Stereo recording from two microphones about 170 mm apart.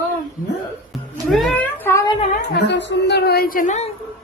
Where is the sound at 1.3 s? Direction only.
5° left (ahead or behind).